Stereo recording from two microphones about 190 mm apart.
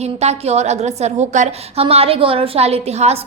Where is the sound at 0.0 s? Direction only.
35° right (ahead or behind).